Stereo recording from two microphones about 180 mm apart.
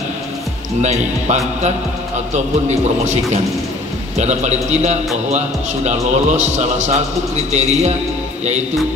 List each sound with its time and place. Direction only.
0.8 s a man's voice: 40° right (ahead or behind)